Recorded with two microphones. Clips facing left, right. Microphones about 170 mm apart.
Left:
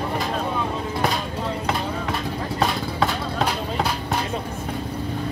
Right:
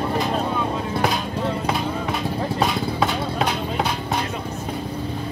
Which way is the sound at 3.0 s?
5° right (ahead or behind).